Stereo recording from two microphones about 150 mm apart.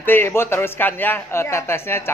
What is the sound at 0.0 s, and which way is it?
A man's voice, 15° left (ahead or behind).